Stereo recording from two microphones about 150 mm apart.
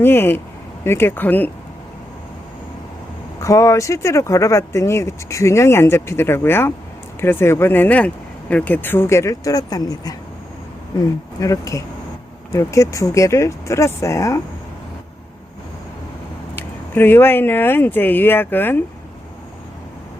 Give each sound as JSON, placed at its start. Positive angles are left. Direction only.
{"t": 0.0, "sound": "speech", "side_deg": 15}
{"t": 3.4, "sound": "speech", "side_deg": 20}
{"t": 11.3, "sound": "speech", "side_deg": 20}
{"t": 16.6, "sound": "speech", "side_deg": 15}